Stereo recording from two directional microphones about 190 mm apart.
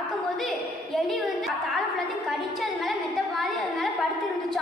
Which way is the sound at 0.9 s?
Centre (ahead or behind).